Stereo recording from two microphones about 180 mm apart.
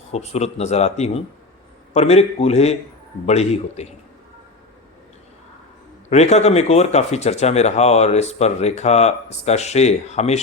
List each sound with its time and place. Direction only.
0.1 s speech: 35° left (ahead or behind)
6.1 s speech: 40° left (ahead or behind)